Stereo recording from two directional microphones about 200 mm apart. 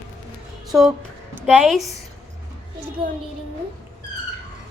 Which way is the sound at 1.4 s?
Centre (ahead or behind).